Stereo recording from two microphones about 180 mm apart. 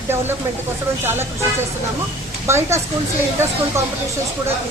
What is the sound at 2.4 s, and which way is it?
Speech, 15° right (ahead or behind).